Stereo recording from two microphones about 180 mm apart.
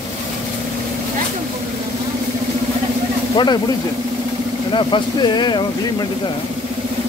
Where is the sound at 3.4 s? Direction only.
25° left (ahead or behind).